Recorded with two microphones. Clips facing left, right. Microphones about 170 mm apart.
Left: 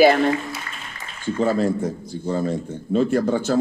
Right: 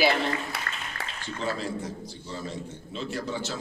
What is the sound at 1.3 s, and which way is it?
A woman's voice, 50° left (ahead or behind).